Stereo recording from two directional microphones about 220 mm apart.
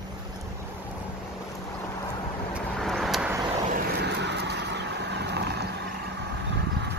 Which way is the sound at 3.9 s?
50° right (ahead or behind).